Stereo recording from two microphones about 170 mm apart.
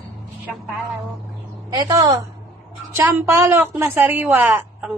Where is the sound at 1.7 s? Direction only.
20° right (ahead or behind).